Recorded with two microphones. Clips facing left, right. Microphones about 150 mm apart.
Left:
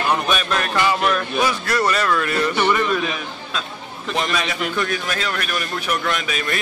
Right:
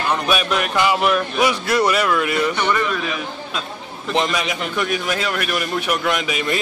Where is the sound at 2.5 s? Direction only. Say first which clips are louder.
Left 2 dB; 10° left (ahead or behind).